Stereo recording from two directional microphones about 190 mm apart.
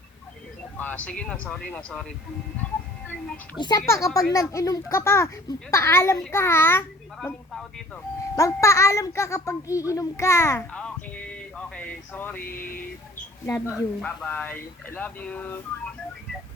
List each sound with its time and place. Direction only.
0.8 s a child's voice: 10° left (ahead or behind)
3.6 s a child's voice: 20° left (ahead or behind)
8.4 s a child's voice: 15° left (ahead or behind)
12.5 s a sound: 45° left (ahead or behind)
13.7 s a child's voice: centre (ahead or behind)